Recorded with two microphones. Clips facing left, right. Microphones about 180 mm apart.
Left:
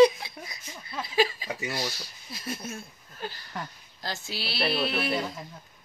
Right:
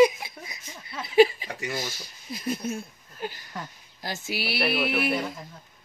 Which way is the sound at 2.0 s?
15° right (ahead or behind).